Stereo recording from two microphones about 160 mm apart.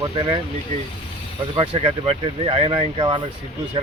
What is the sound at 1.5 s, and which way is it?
Speech, 35° right (ahead or behind).